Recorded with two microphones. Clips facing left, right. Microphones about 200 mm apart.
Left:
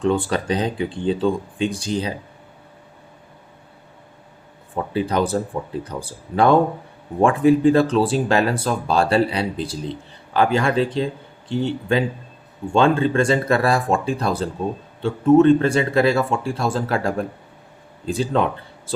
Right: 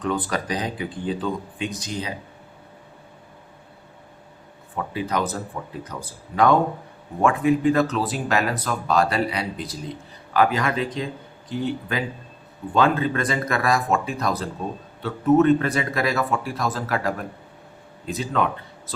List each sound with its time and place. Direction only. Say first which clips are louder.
0.0 s speech: left 5 dB; 30° left (ahead or behind)
4.8 s speech: left 5 dB; 30° left (ahead or behind)